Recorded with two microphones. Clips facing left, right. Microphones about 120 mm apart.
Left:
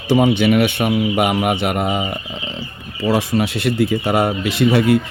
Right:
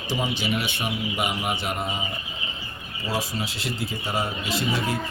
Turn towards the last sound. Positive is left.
turn(degrees=65)  # may be behind; listen again after turning